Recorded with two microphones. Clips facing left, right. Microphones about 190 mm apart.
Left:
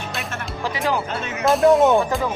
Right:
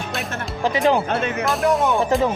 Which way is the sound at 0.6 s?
20° right (ahead or behind).